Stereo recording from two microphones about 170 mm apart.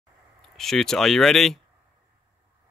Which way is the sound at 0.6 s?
Centre (ahead or behind).